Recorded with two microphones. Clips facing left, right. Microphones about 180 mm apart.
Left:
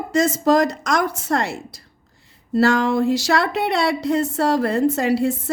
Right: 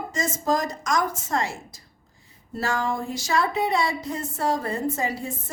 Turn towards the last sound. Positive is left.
turn(degrees=75)  # may be behind; listen again after turning